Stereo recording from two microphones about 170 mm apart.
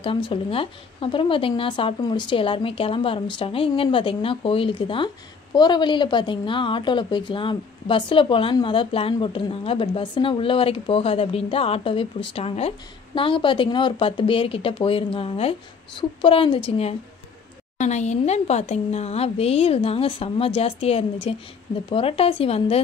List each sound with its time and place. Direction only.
0.0 s speech: 30° left (ahead or behind)